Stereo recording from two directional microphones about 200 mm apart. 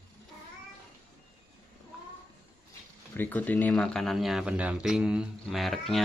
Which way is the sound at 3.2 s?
10° left (ahead or behind).